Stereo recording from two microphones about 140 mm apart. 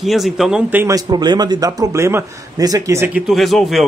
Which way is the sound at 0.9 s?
30° right (ahead or behind).